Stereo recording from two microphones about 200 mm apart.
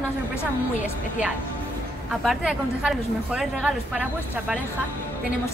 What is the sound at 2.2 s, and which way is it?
A woman's voice, 5° right (ahead or behind).